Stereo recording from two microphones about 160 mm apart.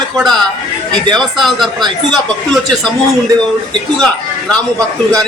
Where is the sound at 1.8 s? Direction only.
25° right (ahead or behind).